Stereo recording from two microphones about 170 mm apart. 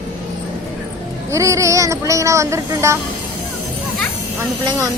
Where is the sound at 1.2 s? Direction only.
20° right (ahead or behind).